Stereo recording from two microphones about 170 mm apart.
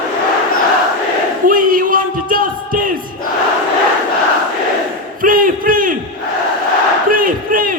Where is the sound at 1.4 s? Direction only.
55° right (ahead or behind).